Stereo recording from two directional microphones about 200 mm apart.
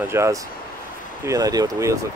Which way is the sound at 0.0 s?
15° right (ahead or behind).